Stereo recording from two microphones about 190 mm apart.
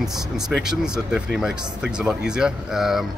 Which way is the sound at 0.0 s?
Centre (ahead or behind).